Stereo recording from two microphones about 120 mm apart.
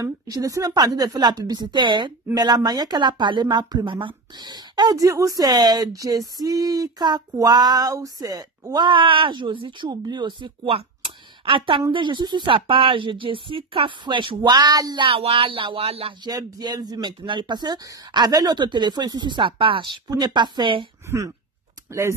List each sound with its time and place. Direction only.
0.0 s a woman's voice: 30° right (ahead or behind)
15.0 s a woman's voice: 50° right (ahead or behind)
16.3 s speech: 35° right (ahead or behind)
21.0 s speech: 25° right (ahead or behind)